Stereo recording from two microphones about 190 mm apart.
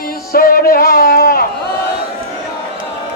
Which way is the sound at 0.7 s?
55° left (ahead or behind).